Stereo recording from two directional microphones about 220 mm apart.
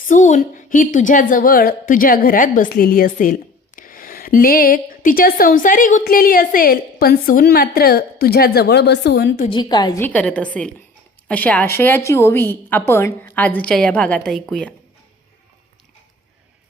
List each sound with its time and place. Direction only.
0.1 s a woman's voice: 35° left (ahead or behind); by 9.3 s 50° left (ahead or behind)
9.4 s a woman's voice: 20° left (ahead or behind)
10.0 s a woman's voice: 5° left (ahead or behind)